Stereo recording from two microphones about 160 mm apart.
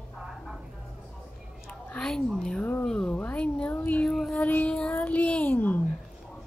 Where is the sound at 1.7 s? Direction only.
10° left (ahead or behind).